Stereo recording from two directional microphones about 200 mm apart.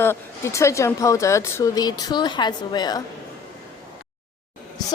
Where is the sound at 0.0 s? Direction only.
10° left (ahead or behind).